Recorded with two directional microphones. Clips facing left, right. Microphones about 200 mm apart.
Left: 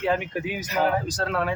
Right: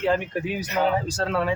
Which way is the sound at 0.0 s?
5° left (ahead or behind).